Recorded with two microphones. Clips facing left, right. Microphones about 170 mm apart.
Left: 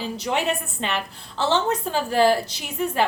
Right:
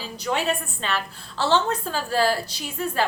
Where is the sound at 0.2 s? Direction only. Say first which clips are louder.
Right 1 dB; 20° left (ahead or behind).